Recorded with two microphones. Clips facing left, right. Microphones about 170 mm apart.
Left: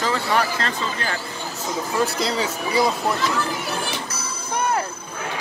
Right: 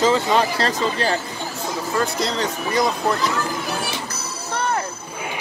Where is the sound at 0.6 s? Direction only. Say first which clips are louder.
Right 5 dB; 35° right (ahead or behind).